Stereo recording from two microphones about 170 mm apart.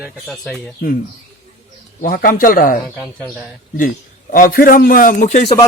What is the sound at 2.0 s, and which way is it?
Speech, 55° left (ahead or behind).